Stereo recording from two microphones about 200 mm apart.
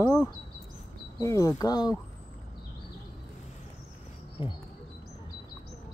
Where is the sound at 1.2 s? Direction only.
15° left (ahead or behind).